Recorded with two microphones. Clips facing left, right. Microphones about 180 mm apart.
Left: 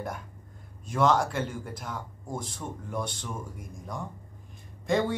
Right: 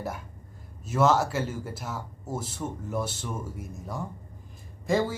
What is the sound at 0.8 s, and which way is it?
A man's voice, 5° right (ahead or behind).